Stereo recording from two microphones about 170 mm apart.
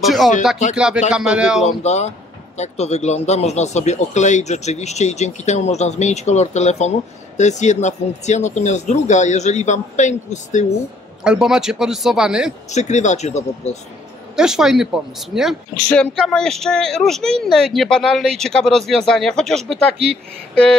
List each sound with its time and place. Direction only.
0.0 s speech: centre (ahead or behind)
1.6 s speech: 40° left (ahead or behind)
11.2 s speech: 5° right (ahead or behind)
12.7 s speech: 45° left (ahead or behind)
14.3 s speech: 5° right (ahead or behind)